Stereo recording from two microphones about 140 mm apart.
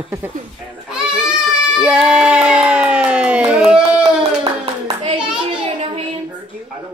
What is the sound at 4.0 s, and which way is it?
Hands, 45° right (ahead or behind).